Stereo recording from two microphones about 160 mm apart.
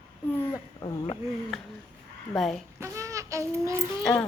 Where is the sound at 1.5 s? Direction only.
Centre (ahead or behind).